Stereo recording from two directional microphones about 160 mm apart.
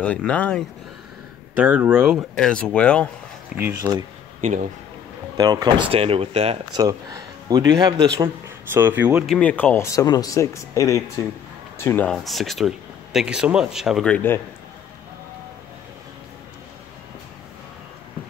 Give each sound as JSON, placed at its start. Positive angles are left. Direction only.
{"t": 0.0, "sound": "speech", "side_deg": 10}
{"t": 1.5, "sound": "speech", "side_deg": -10}
{"t": 2.3, "sound": "speech", "side_deg": 5}
{"t": 3.5, "sound": "speech", "side_deg": -15}
{"t": 4.4, "sound": "speech", "side_deg": -50}
{"t": 5.4, "sound": "speech", "side_deg": -25}
{"t": 6.7, "sound": "speech", "side_deg": -20}
{"t": 8.7, "sound": "speech", "side_deg": -10}
{"t": 9.2, "sound": "speech", "side_deg": 5}
{"t": 14.1, "sound": "speech", "side_deg": 15}